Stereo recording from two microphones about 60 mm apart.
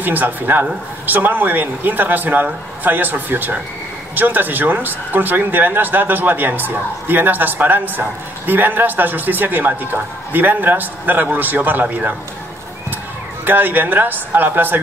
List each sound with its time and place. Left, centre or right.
0.0 s speech: right
13.5 s speech: right